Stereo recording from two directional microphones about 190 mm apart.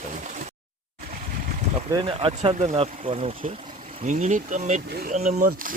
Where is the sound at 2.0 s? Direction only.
30° right (ahead or behind).